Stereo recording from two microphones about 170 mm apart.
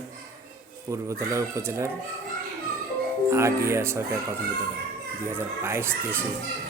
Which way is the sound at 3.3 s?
15° right (ahead or behind).